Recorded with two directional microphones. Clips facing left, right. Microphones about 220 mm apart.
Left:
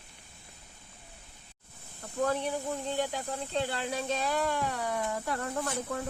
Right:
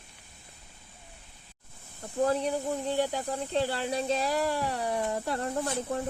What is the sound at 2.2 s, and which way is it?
Speech, 35° right (ahead or behind).